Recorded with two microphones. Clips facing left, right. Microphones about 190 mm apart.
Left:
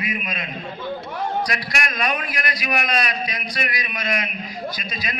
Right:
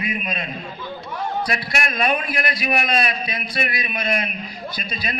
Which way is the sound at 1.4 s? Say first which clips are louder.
Right 2 dB; 25° right (ahead or behind).